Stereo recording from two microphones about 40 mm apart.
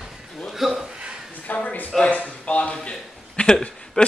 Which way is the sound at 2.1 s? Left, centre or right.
Left.